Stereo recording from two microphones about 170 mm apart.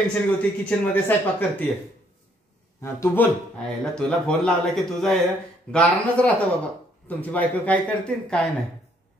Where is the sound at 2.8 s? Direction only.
15° left (ahead or behind).